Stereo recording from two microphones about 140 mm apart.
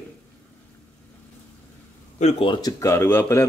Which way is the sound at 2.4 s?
30° left (ahead or behind).